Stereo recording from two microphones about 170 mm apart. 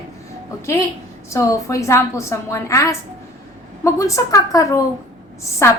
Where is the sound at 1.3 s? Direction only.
20° left (ahead or behind).